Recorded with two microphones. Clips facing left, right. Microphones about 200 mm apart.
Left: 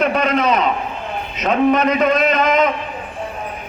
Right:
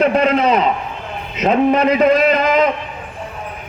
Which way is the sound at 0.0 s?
30° right (ahead or behind).